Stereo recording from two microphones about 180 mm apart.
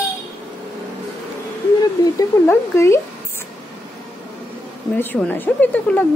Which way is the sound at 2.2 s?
15° left (ahead or behind).